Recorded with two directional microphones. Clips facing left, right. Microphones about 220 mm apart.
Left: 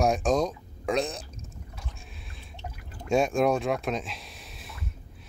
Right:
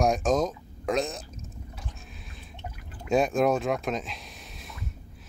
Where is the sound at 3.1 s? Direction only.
Centre (ahead or behind).